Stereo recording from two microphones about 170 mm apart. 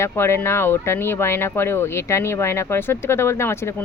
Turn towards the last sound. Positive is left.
turn(degrees=15)  # may be behind; listen again after turning